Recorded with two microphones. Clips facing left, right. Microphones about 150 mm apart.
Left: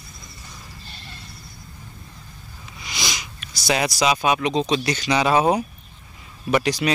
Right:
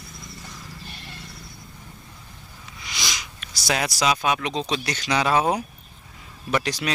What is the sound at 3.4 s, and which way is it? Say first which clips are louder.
Speech: left 3 dB; 5° left (ahead or behind).